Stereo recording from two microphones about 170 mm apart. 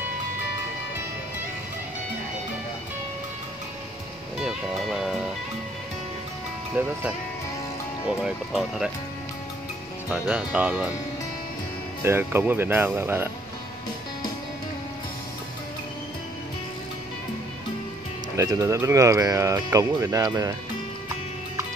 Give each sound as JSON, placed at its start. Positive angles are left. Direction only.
{"t": 4.4, "sound": "music", "side_deg": 0}
{"t": 6.7, "sound": "speech", "side_deg": -10}
{"t": 8.2, "sound": "speech", "side_deg": -5}
{"t": 10.0, "sound": "speech", "side_deg": -10}
{"t": 12.0, "sound": "speech", "side_deg": -15}
{"t": 18.3, "sound": "speech", "side_deg": -15}